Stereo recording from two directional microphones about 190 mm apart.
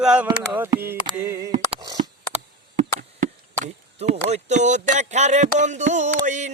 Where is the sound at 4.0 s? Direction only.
35° right (ahead or behind).